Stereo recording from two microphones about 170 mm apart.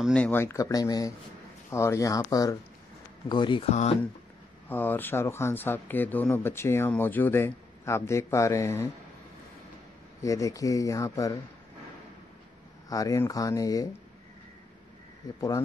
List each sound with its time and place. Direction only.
0.0 s speech: 5° left (ahead or behind); by 3.7 s 30° left (ahead or behind)
4.6 s speech: 10° left (ahead or behind)
10.2 s speech: 20° left (ahead or behind)
12.9 s speech: 20° left (ahead or behind)